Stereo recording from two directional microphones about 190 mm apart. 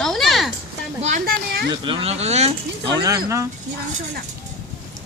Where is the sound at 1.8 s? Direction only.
30° right (ahead or behind).